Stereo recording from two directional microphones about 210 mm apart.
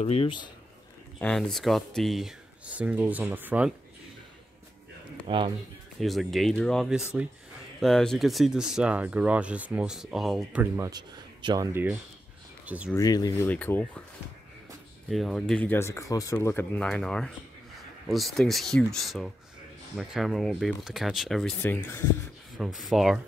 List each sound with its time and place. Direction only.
0.0 s speech: 30° left (ahead or behind)
1.2 s speech: centre (ahead or behind)
5.2 s speech: 25° right (ahead or behind)
5.9 s speech: centre (ahead or behind)
12.9 s speech: 15° left (ahead or behind)
15.0 s speech: centre (ahead or behind)
22.6 s speech: centre (ahead or behind)